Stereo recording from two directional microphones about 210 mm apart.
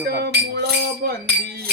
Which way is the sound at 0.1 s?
50° right (ahead or behind).